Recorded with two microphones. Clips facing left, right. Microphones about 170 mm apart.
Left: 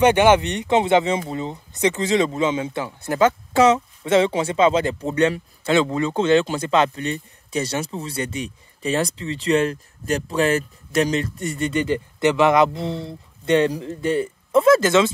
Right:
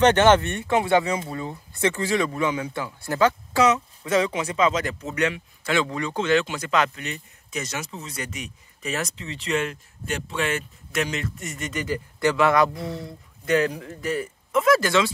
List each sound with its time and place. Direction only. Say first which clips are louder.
0.0 s speech: left 2 dB; 10° left (ahead or behind)